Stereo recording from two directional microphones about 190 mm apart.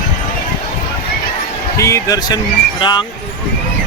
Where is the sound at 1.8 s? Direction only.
15° left (ahead or behind).